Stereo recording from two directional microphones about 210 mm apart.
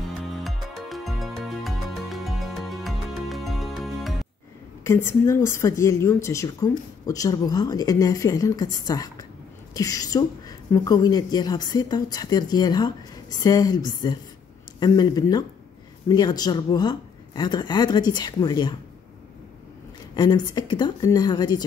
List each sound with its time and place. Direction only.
0.4 s music: centre (ahead or behind)
4.8 s a woman's voice: 10° left (ahead or behind)
20.2 s a woman's voice: 20° left (ahead or behind)